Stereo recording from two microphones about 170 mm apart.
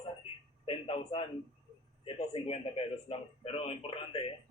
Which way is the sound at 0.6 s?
35° left (ahead or behind).